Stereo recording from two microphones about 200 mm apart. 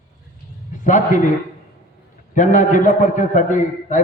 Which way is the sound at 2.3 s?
40° left (ahead or behind).